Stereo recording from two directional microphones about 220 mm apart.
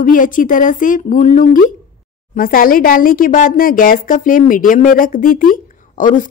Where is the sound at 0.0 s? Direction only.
35° left (ahead or behind).